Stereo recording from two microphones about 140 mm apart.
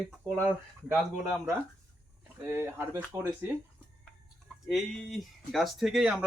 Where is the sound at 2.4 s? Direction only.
15° right (ahead or behind).